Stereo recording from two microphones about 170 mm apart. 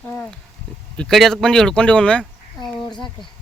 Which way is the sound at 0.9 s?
Centre (ahead or behind).